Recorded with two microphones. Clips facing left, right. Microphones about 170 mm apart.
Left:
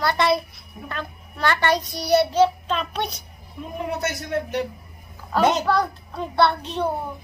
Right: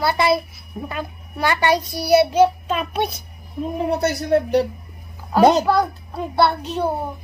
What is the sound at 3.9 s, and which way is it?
Speech, 35° right (ahead or behind).